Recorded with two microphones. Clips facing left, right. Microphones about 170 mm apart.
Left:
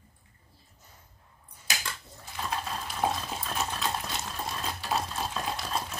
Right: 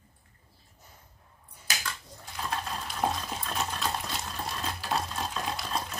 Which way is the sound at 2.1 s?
Centre (ahead or behind).